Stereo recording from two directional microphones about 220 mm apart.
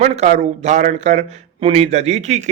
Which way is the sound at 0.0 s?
30° right (ahead or behind).